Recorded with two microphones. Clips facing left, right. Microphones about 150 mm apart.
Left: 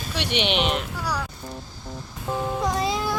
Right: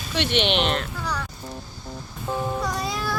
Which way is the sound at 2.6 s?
20° left (ahead or behind).